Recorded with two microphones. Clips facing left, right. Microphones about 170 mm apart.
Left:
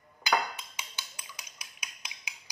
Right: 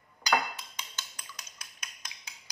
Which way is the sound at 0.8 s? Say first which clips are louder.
Even; 10° left (ahead or behind).